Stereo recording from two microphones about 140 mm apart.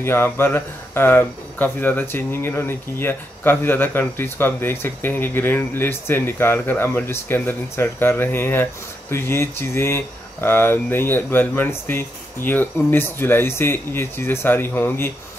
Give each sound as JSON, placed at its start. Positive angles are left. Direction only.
{"t": 0.0, "sound": "speech", "side_deg": 15}